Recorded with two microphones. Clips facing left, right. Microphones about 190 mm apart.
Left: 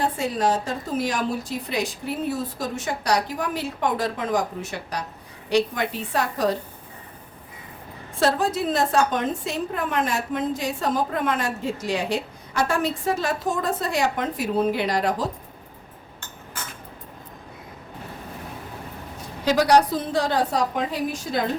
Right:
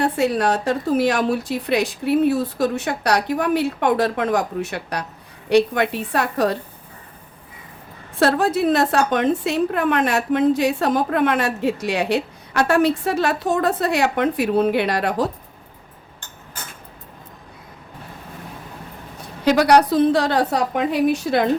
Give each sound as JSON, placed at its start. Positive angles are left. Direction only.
{"t": 0.0, "sound": "a woman's voice", "side_deg": -70}
{"t": 8.2, "sound": "a woman's voice", "side_deg": -65}
{"t": 19.5, "sound": "a woman's voice", "side_deg": -65}